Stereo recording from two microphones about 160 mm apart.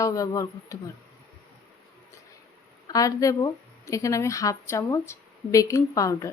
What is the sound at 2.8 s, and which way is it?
A woman's voice, 20° left (ahead or behind).